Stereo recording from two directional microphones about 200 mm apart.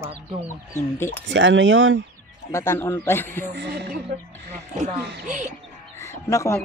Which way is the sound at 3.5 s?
55° right (ahead or behind).